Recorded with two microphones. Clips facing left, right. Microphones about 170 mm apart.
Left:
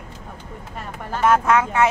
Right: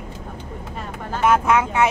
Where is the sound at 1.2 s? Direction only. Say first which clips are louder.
Even; 15° right (ahead or behind).